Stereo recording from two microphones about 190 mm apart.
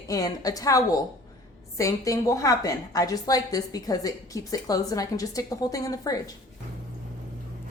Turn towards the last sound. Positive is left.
turn(degrees=20)  # may be behind; listen again after turning